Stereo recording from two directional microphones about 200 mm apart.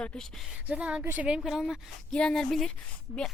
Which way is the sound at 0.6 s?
5° right (ahead or behind).